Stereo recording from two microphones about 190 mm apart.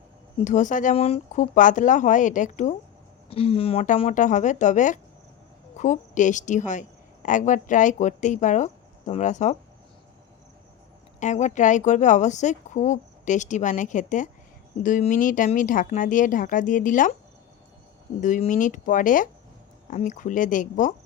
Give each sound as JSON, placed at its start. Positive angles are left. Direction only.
{"t": 0.3, "sound": "speech", "side_deg": 40}
{"t": 3.2, "sound": "a woman's voice", "side_deg": 30}
{"t": 11.2, "sound": "speech", "side_deg": 40}
{"t": 18.2, "sound": "speech", "side_deg": 40}